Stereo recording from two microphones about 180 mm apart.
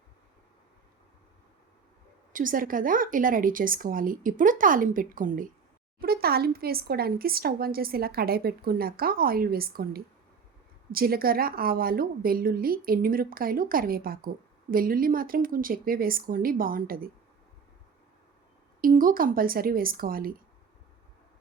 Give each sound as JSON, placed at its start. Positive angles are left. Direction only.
{"t": 2.3, "sound": "a woman's voice", "side_deg": -50}
{"t": 18.8, "sound": "a woman's voice", "side_deg": -50}